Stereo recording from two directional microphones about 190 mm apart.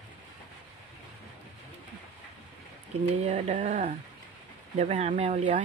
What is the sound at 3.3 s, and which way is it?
Speech, 40° right (ahead or behind).